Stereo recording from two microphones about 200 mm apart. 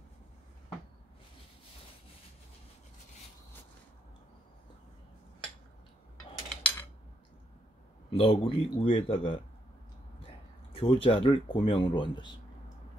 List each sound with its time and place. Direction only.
6.6 s cutlery: 10° left (ahead or behind)
8.1 s a man's voice: 30° left (ahead or behind)